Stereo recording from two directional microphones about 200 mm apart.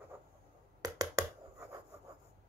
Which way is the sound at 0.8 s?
15° right (ahead or behind).